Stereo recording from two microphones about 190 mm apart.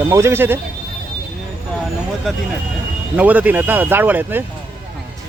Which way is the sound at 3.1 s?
10° right (ahead or behind).